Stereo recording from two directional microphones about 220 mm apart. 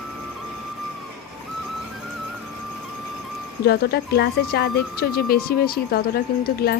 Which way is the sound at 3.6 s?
45° left (ahead or behind).